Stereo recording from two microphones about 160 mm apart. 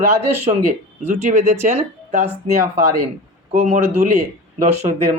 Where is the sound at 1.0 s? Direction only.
45° right (ahead or behind).